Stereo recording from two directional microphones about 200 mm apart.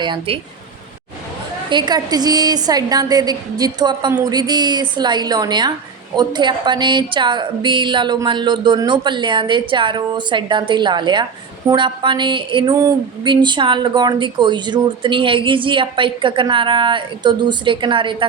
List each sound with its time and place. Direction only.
0.0 s speech: 25° right (ahead or behind)
1.7 s speech: 20° right (ahead or behind)